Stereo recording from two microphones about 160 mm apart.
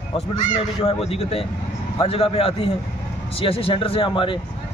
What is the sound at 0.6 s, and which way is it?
Speech, 35° left (ahead or behind).